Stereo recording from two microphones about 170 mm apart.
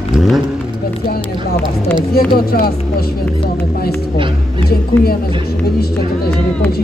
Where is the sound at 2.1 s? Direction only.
60° left (ahead or behind).